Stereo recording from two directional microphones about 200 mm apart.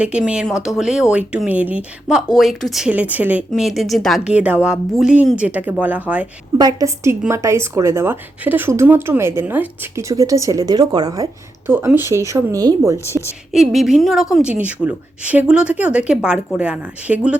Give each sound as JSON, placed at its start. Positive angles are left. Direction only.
{"t": 0.0, "sound": "speech", "side_deg": -5}
{"t": 6.6, "sound": "a woman's voice", "side_deg": -20}
{"t": 13.5, "sound": "speech", "side_deg": 0}